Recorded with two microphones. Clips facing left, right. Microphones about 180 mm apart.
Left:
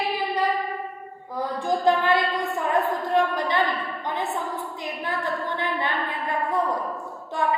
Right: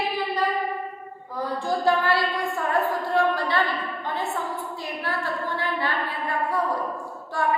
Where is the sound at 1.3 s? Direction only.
20° left (ahead or behind).